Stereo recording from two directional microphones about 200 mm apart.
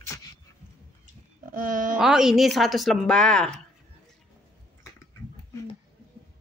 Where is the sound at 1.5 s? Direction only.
40° right (ahead or behind).